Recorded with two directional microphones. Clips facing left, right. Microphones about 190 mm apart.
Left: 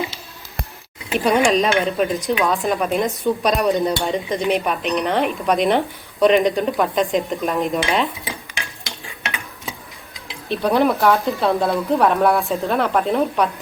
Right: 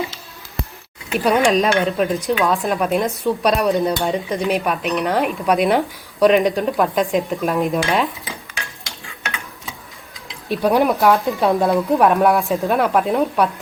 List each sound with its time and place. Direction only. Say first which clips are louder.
1.5 s stir: right 1 dB; centre (ahead or behind)
9.0 s a sound: even; 15° left (ahead or behind)
10.5 s speech: right 1 dB; 10° right (ahead or behind)
12.4 s stir: right 2 dB; centre (ahead or behind)
12.6 s speech: right 2 dB; 10° right (ahead or behind)